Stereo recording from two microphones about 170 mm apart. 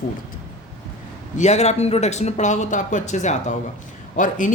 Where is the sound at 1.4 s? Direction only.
40° left (ahead or behind).